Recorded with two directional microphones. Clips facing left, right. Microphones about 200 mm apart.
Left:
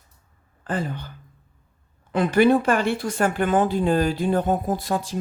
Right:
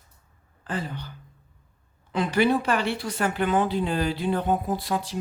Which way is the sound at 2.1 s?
50° left (ahead or behind).